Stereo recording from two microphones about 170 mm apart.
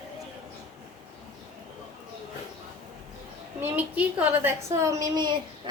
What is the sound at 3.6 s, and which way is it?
A woman's voice, 10° right (ahead or behind).